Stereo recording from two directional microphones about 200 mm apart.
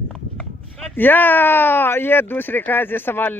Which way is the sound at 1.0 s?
10° left (ahead or behind).